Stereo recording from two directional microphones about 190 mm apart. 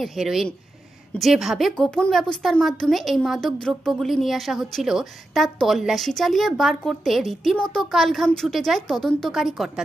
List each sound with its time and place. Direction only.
0.0 s a woman's voice: centre (ahead or behind)